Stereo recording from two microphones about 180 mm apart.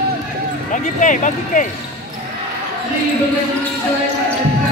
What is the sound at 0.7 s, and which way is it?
Speech, 45° left (ahead or behind).